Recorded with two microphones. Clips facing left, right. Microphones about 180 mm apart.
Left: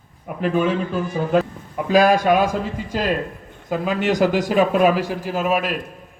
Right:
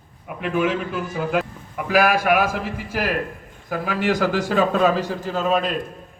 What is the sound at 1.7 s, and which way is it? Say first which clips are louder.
A man's voice: left 3 dB; 20° left (ahead or behind).